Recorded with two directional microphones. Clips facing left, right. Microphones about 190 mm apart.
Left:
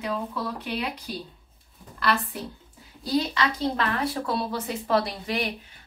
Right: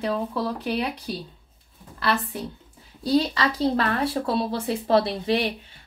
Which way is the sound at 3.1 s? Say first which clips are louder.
Right 3 dB; 35° right (ahead or behind).